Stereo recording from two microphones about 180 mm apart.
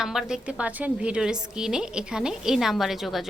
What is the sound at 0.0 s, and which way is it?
A woman's voice, centre (ahead or behind).